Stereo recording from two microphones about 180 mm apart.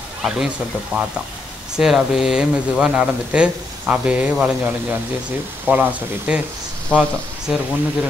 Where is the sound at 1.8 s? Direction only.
5° right (ahead or behind).